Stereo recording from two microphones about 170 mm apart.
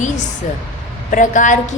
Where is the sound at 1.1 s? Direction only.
50° left (ahead or behind).